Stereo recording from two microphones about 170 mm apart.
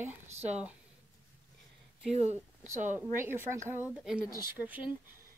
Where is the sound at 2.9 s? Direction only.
10° right (ahead or behind).